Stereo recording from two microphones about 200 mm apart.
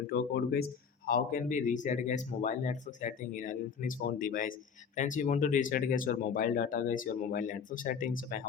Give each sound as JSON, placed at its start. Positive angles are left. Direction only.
{"t": 0.1, "sound": "speech", "side_deg": 50}